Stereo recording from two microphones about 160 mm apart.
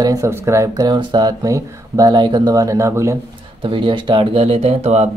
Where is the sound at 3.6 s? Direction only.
30° right (ahead or behind).